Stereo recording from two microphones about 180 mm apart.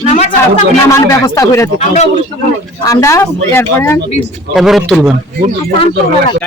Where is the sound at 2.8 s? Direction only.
20° left (ahead or behind).